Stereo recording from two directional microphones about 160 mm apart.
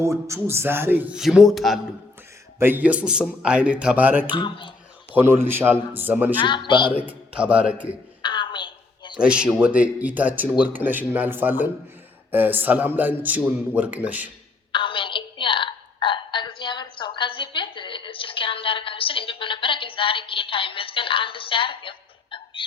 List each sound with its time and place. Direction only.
0.0 s a man's voice: 20° right (ahead or behind); by 1.8 s centre (ahead or behind)
2.6 s a man's voice: 10° right (ahead or behind)
4.4 s speech: 30° left (ahead or behind)
5.1 s a man's voice: 15° right (ahead or behind)
6.4 s speech: 30° left (ahead or behind)
7.1 s a man's voice: 10° right (ahead or behind)
8.2 s a sound: 30° left (ahead or behind)
9.1 s a man's voice: 5° right (ahead or behind)
14.7 s a sound: 30° left (ahead or behind)